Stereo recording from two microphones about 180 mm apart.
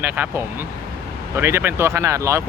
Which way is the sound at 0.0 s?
10° right (ahead or behind).